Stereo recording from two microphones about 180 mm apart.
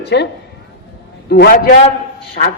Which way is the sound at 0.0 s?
70° left (ahead or behind).